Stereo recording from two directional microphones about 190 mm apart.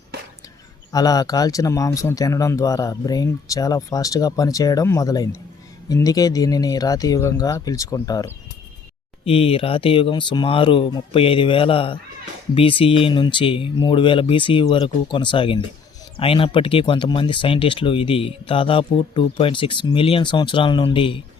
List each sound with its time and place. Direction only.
0.9 s speech: 20° left (ahead or behind)
9.2 s speech: 30° left (ahead or behind)